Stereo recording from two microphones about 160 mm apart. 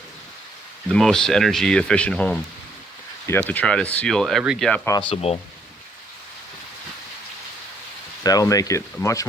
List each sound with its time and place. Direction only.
0.9 s speech: 5° left (ahead or behind)
4.9 s speech: 30° left (ahead or behind)
8.2 s speech: 20° left (ahead or behind)